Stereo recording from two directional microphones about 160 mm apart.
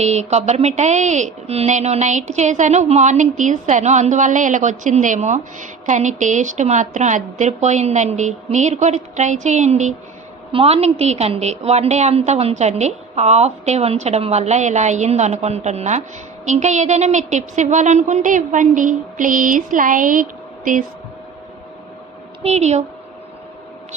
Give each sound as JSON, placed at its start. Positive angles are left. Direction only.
{"t": 0.0, "sound": "a woman's voice", "side_deg": -45}
{"t": 22.4, "sound": "a woman's voice", "side_deg": -45}